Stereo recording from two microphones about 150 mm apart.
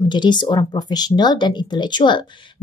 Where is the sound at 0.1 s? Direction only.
30° left (ahead or behind).